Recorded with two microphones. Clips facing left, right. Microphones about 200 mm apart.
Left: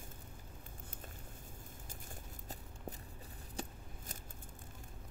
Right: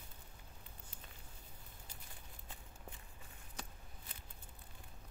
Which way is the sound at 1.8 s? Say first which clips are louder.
Left 6 dB; 45° left (ahead or behind).